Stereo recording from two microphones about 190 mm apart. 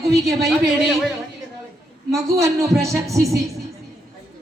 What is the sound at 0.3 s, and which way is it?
Speech, centre (ahead or behind).